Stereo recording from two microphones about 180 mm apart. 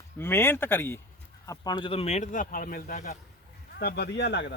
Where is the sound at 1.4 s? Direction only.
20° left (ahead or behind); by 3.1 s 45° left (ahead or behind).